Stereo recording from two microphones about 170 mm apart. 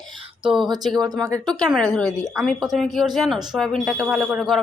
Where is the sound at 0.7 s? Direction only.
25° right (ahead or behind).